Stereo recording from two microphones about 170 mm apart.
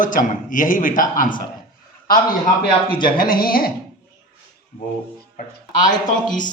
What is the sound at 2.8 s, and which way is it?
Speech, 55° left (ahead or behind).